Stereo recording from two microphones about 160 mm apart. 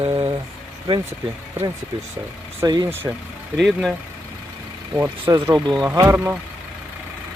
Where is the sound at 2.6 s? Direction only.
25° right (ahead or behind).